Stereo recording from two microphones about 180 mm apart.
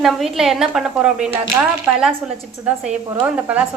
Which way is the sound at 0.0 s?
Centre (ahead or behind).